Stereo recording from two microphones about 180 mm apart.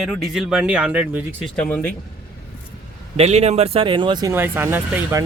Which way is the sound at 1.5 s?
10° left (ahead or behind).